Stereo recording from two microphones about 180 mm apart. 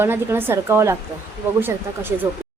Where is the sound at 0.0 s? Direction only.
15° right (ahead or behind).